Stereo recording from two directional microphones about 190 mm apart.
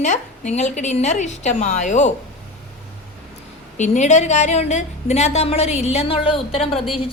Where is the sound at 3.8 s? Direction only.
40° left (ahead or behind).